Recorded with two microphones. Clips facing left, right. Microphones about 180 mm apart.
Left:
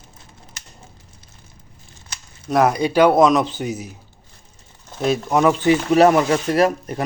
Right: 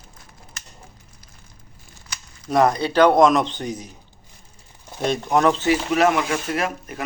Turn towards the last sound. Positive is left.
turn(degrees=35)  # may be behind; listen again after turning